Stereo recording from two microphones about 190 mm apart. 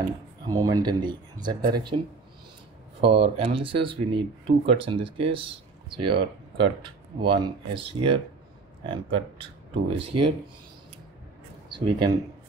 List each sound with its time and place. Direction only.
0.5 s speech: 20° right (ahead or behind)
3.0 s speech: 30° right (ahead or behind)
11.7 s speech: 25° right (ahead or behind)